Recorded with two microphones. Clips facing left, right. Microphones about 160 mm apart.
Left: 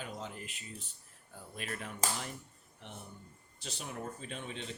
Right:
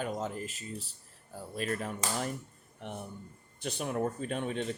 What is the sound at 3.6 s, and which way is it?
Speech, 55° right (ahead or behind).